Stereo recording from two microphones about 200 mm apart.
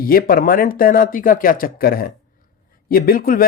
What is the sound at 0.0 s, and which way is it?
Speech, 45° left (ahead or behind).